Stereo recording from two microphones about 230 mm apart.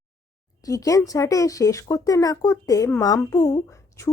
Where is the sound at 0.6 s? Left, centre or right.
Centre.